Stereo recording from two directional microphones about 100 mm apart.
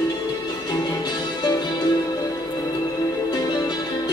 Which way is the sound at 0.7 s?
40° left (ahead or behind).